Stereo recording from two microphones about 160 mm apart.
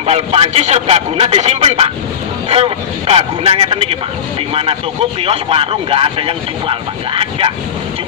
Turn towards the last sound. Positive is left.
turn(degrees=-35)  # may be behind; listen again after turning